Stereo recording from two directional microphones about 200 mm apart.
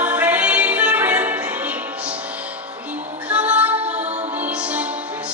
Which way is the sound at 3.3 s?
5° right (ahead or behind).